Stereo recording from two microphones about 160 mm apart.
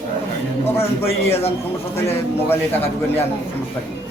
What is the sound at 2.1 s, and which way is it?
A man's voice, 15° left (ahead or behind).